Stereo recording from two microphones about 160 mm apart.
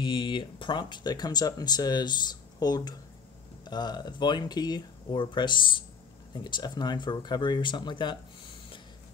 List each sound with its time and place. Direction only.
0.0 s speech: 30° left (ahead or behind)